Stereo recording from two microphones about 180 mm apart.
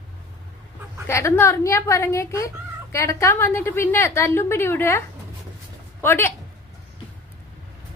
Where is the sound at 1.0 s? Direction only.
15° left (ahead or behind).